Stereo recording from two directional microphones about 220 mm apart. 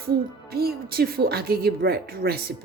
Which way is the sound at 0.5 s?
45° right (ahead or behind).